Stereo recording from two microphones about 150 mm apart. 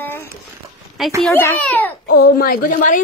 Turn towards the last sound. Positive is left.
turn(degrees=70)  # may be behind; listen again after turning